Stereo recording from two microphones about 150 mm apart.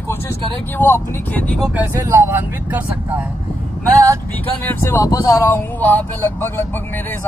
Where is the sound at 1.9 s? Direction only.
20° right (ahead or behind).